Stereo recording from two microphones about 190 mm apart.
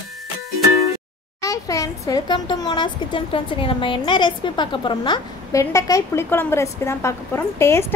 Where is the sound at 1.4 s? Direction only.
15° left (ahead or behind).